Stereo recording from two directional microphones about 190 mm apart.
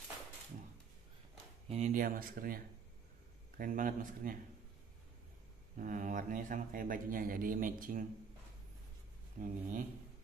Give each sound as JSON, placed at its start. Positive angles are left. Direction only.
{"t": 1.7, "sound": "speech", "side_deg": -40}
{"t": 5.8, "sound": "speech", "side_deg": -45}
{"t": 9.4, "sound": "speech", "side_deg": -45}